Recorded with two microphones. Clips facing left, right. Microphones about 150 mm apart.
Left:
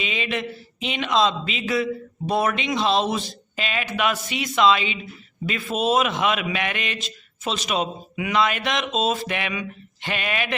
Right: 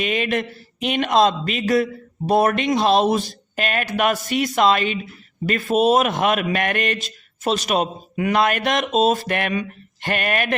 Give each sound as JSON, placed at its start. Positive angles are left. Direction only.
{"t": 0.0, "sound": "speech", "side_deg": -50}